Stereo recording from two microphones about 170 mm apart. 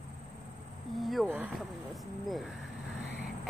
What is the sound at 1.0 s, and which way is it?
Speech, centre (ahead or behind).